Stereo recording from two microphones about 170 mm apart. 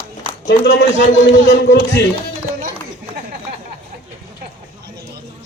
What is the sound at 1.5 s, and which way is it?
Speech, 75° left (ahead or behind).